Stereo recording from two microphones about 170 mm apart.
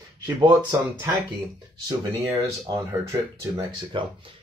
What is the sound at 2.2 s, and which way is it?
Speech, 20° right (ahead or behind).